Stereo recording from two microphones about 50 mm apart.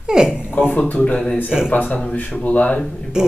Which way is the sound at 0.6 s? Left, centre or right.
Left.